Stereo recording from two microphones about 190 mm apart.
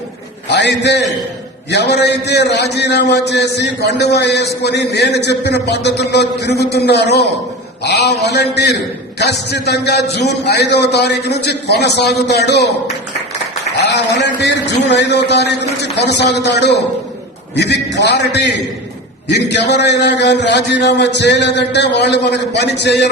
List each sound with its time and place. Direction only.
0.4 s a man's voice: 65° left (ahead or behind)
13.7 s a man's voice: 65° left (ahead or behind)
17.9 s a man's voice: 65° left (ahead or behind)